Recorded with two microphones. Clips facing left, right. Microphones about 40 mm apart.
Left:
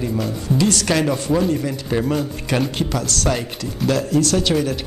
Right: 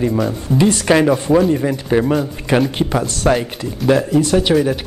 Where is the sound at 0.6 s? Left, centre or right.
Right.